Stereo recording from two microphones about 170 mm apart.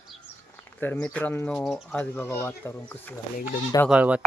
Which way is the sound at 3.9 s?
5° right (ahead or behind).